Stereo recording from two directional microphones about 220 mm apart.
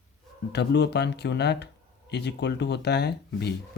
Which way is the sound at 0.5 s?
50° left (ahead or behind).